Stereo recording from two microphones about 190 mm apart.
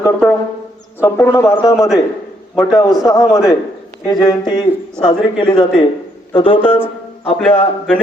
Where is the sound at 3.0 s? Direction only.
20° left (ahead or behind).